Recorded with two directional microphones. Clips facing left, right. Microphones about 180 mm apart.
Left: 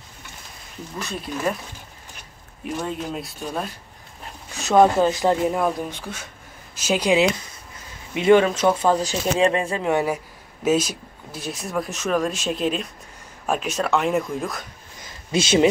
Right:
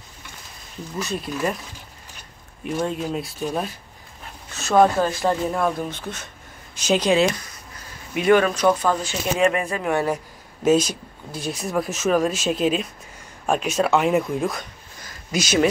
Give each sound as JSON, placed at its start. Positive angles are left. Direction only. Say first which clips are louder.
{"t": 0.9, "sound": "speech", "louder": "right 2 dB", "side_deg": 0}
{"t": 2.6, "sound": "speech", "louder": "right 3 dB", "side_deg": 0}
{"t": 4.6, "sound": "speech", "louder": "left 1 dB", "side_deg": 15}
{"t": 8.1, "sound": "speech", "louder": "left 2 dB", "side_deg": 25}
{"t": 10.0, "sound": "speech", "louder": "right 1 dB", "side_deg": 5}
{"t": 15.0, "sound": "a sound", "louder": "left 3 dB", "side_deg": 25}